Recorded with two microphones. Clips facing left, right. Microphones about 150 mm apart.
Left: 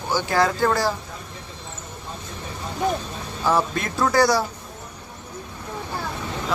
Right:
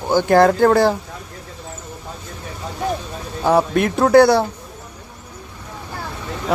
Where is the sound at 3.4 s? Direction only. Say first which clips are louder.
Right 6 dB; 60° right (ahead or behind).